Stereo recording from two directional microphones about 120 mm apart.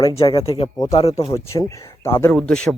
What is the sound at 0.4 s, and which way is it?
Speech, 50° left (ahead or behind).